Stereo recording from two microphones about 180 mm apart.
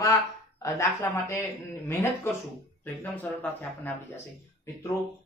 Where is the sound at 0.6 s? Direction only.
15° left (ahead or behind).